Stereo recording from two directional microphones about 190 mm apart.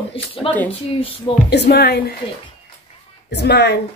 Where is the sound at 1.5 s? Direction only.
60° left (ahead or behind).